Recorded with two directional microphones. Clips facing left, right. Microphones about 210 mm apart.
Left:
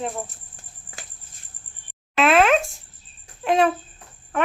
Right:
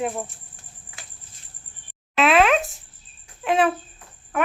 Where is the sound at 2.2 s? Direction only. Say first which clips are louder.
Left 1 dB; centre (ahead or behind).